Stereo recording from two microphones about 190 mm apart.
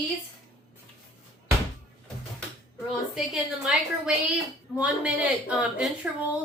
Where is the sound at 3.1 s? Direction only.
5° right (ahead or behind).